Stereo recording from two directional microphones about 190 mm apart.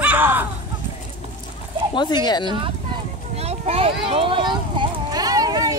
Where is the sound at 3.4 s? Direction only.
35° right (ahead or behind).